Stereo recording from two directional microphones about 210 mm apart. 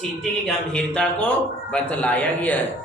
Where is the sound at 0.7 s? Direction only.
5° left (ahead or behind).